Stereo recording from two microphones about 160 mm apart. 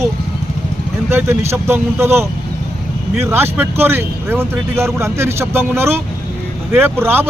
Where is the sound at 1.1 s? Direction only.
15° right (ahead or behind).